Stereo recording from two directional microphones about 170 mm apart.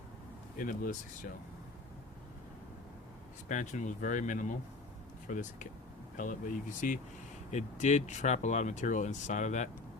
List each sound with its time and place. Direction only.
0.5 s speech: 55° left (ahead or behind)
3.5 s speech: 45° left (ahead or behind)